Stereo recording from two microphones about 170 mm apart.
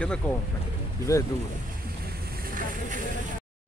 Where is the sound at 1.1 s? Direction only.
20° left (ahead or behind).